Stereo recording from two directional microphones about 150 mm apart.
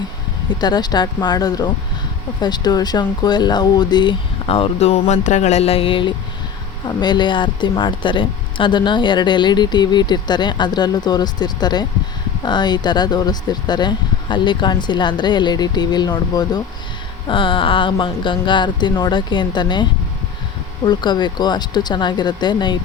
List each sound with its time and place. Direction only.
0.6 s speech: 30° left (ahead or behind)